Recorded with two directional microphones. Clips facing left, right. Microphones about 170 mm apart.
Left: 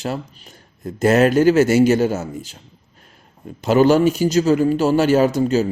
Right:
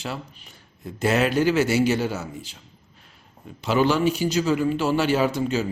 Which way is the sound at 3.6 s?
45° left (ahead or behind).